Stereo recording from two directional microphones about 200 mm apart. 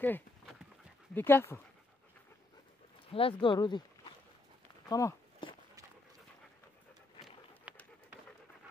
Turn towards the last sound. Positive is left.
turn(degrees=-5)  # may be behind; listen again after turning